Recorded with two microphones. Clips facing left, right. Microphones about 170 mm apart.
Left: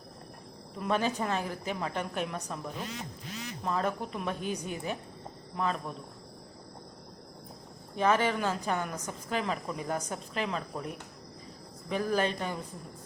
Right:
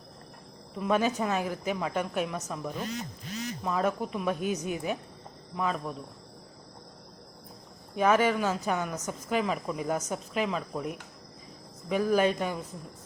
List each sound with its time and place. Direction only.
0.8 s a woman's voice: 10° right (ahead or behind)
2.9 s quack: 40° right (ahead or behind)
3.6 s speech: 5° right (ahead or behind)
7.9 s speech: 10° right (ahead or behind)